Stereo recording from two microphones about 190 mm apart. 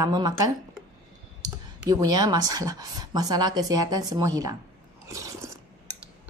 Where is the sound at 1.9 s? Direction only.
20° right (ahead or behind).